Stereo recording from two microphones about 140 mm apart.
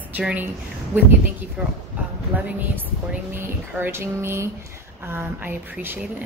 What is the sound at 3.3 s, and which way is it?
A woman's voice, 15° right (ahead or behind).